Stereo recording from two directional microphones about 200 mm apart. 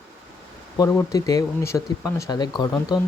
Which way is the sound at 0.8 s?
15° left (ahead or behind).